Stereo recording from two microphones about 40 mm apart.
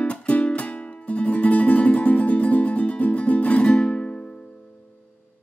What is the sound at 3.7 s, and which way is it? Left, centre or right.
Music, left.